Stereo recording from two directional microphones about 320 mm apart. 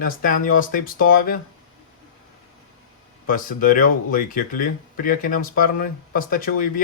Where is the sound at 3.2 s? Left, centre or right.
Left.